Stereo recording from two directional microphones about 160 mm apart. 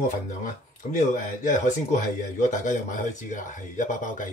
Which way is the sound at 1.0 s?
50° left (ahead or behind).